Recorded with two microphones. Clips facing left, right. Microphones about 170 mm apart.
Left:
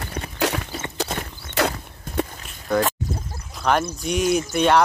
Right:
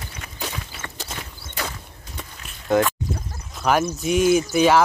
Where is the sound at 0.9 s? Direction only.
70° left (ahead or behind).